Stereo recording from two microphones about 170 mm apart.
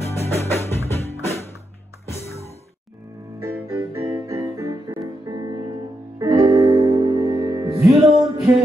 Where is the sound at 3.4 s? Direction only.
20° right (ahead or behind).